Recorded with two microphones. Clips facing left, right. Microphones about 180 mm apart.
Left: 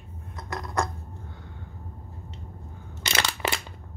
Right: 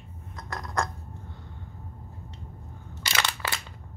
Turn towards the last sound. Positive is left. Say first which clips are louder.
# left 3 dB
turn(degrees=20)  # may be behind; listen again after turning